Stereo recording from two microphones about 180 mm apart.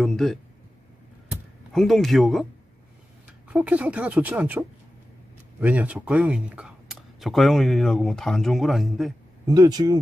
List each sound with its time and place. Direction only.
0.0 s a sound: centre (ahead or behind)
3.4 s a woman's voice: 5° right (ahead or behind)
9.5 s speech: 20° right (ahead or behind)